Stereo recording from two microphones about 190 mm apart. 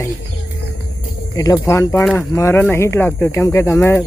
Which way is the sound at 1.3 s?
20° left (ahead or behind).